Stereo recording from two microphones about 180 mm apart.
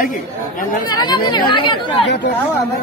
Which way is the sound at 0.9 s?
25° left (ahead or behind).